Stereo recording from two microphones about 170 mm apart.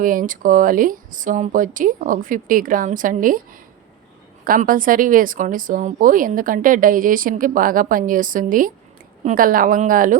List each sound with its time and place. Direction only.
0.0 s speech: 55° right (ahead or behind)